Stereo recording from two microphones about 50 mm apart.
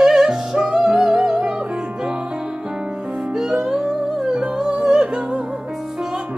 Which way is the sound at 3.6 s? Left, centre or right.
Centre.